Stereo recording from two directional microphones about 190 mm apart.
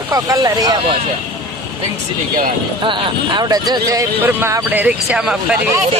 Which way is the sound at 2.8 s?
25° right (ahead or behind).